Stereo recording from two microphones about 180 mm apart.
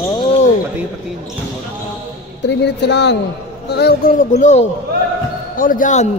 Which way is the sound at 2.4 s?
70° left (ahead or behind).